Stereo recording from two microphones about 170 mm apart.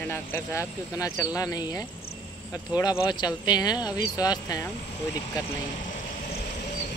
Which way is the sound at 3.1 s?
25° left (ahead or behind).